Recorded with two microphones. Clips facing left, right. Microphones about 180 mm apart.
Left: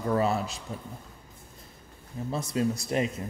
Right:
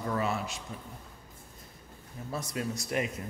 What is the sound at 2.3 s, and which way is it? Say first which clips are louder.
Speech: left 6 dB; 25° left (ahead or behind).